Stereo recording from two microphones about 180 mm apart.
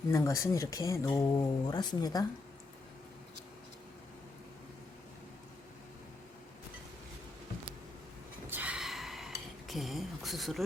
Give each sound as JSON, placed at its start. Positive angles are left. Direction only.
{"t": 0.1, "sound": "speech", "side_deg": 15}
{"t": 8.4, "sound": "gasp", "side_deg": -10}